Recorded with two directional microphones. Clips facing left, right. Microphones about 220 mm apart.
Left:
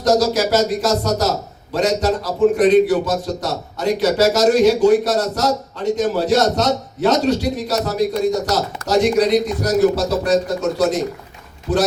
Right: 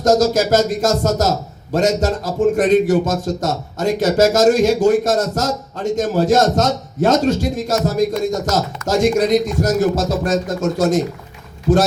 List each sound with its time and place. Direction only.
0.0 s a man's voice: 45° right (ahead or behind)